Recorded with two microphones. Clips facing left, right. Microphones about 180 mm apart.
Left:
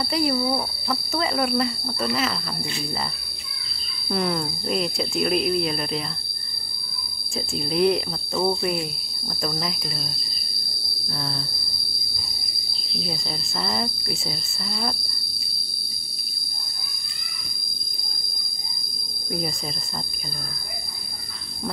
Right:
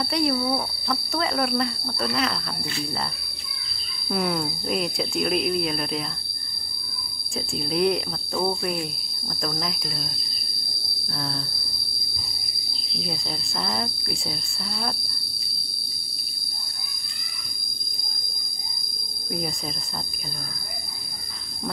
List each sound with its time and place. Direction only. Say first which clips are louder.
0.0 s speech: left 1 dB; centre (ahead or behind)
4.1 s speech: left 1 dB; 5° right (ahead or behind)
7.5 s speech: left 2 dB; centre (ahead or behind)
11.1 s speech: right 1 dB; centre (ahead or behind)
13.6 s speech: left 2 dB; centre (ahead or behind)